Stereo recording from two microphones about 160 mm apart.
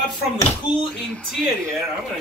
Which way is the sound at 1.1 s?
5° left (ahead or behind).